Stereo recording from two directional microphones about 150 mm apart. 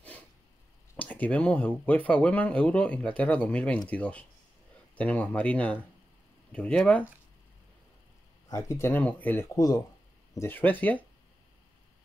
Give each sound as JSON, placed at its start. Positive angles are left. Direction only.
{"t": 0.9, "sound": "speech", "side_deg": 10}
{"t": 8.5, "sound": "speech", "side_deg": 20}